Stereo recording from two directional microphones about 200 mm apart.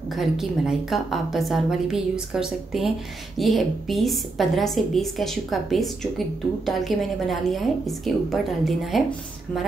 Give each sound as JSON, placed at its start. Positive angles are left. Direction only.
{"t": 0.1, "sound": "a woman's voice", "side_deg": 0}